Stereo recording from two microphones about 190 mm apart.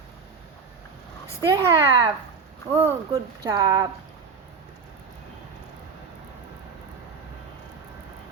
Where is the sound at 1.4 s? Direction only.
20° right (ahead or behind).